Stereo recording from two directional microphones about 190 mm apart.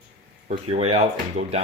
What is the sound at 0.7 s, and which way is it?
Speech, 30° right (ahead or behind).